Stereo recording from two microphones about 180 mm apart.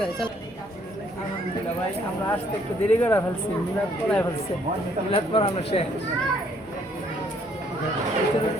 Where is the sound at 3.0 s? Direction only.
10° left (ahead or behind).